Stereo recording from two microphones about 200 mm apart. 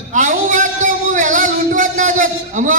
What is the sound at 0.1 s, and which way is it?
A man's voice, 40° right (ahead or behind).